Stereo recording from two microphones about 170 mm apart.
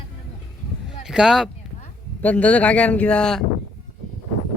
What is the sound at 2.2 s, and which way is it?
A man's voice, 10° left (ahead or behind).